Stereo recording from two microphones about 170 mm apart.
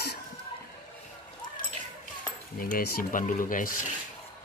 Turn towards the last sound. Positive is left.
turn(degrees=55)  # may be behind; listen again after turning